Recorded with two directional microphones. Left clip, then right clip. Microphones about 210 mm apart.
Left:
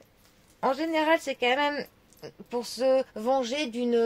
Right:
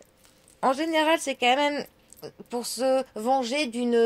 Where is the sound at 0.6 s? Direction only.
40° right (ahead or behind).